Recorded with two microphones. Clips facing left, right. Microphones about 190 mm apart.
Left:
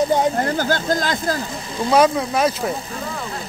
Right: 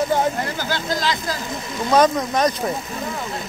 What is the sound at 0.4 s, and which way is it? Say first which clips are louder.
Speech: left 5 dB; 45° left (ahead or behind).